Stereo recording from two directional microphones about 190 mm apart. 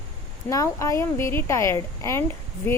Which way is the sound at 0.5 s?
15° left (ahead or behind).